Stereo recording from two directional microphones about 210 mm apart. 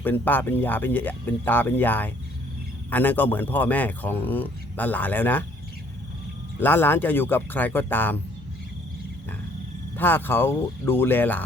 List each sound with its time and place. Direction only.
0.0 s speech: 10° left (ahead or behind)
6.6 s speech: 10° left (ahead or behind)
10.0 s speech: 10° left (ahead or behind)